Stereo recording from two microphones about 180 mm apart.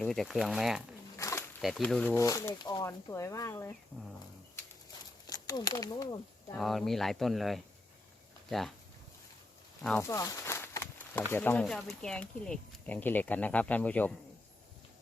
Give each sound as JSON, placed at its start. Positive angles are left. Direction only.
{"t": 0.0, "sound": "speech", "side_deg": 0}
{"t": 1.2, "sound": "a sound", "side_deg": 15}
{"t": 1.6, "sound": "speech", "side_deg": 5}
{"t": 2.1, "sound": "speech", "side_deg": 20}
{"t": 5.2, "sound": "speech", "side_deg": 20}
{"t": 6.6, "sound": "speech", "side_deg": 0}
{"t": 10.0, "sound": "a sound", "side_deg": 15}
{"t": 11.3, "sound": "speech", "side_deg": 10}